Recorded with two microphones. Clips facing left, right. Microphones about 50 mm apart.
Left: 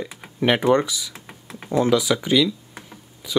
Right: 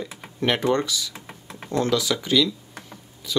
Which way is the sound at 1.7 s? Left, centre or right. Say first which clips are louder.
Left 4 dB; centre.